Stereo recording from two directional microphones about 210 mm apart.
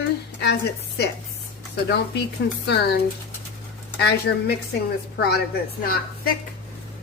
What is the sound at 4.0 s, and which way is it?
Speech, 50° left (ahead or behind).